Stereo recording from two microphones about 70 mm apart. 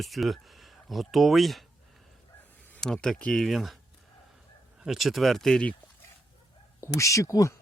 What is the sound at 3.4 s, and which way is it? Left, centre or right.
Speech, centre.